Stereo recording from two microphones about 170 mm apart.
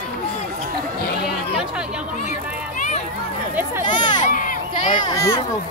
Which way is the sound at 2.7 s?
50° left (ahead or behind).